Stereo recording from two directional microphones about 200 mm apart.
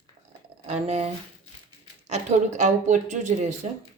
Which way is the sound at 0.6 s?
30° right (ahead or behind).